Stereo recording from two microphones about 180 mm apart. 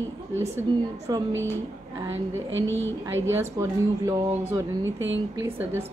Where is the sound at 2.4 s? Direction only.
90° right.